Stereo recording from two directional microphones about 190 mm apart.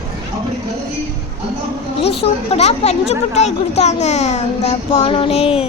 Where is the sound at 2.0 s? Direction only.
30° left (ahead or behind).